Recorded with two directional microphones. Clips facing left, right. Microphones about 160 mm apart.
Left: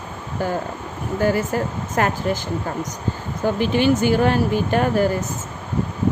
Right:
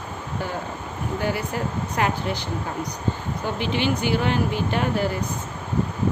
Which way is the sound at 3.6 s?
45° left (ahead or behind).